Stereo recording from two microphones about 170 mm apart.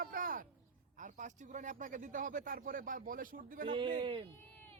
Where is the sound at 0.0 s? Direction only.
55° right (ahead or behind).